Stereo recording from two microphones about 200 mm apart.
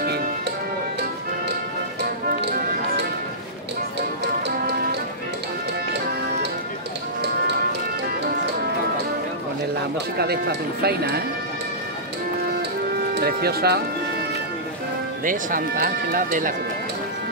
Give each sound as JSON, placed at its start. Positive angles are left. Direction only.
{"t": 2.2, "sound": "music", "side_deg": -45}
{"t": 10.1, "sound": "speech", "side_deg": -55}
{"t": 13.1, "sound": "speech", "side_deg": -50}
{"t": 15.2, "sound": "speech", "side_deg": -45}